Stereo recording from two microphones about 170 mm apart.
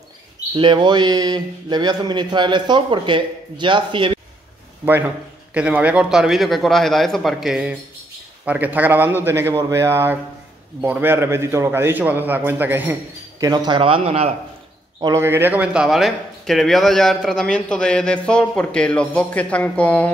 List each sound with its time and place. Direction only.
0.6 s speech: 30° right (ahead or behind)
4.8 s a man's voice: 10° right (ahead or behind)
13.4 s speech: 25° right (ahead or behind)
15.0 s speech: 20° right (ahead or behind); by 20.1 s 10° left (ahead or behind)